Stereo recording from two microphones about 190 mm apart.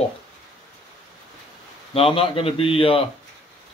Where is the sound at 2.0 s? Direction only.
30° left (ahead or behind).